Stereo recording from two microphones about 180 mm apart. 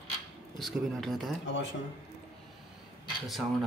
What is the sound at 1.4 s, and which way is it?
Speech, 85° left.